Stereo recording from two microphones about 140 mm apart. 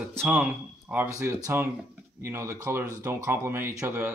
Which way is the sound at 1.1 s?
20° right (ahead or behind).